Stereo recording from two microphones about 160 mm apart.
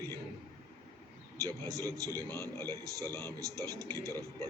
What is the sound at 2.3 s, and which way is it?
A man's voice, 15° left (ahead or behind).